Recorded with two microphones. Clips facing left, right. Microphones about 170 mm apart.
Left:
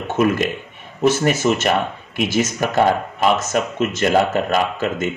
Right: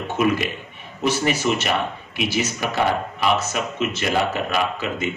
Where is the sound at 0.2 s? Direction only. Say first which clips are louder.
Left 3 dB; 50° left (ahead or behind).